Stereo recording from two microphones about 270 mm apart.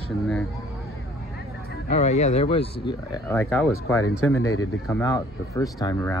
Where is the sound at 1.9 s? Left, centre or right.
Left; by 3.7 s centre.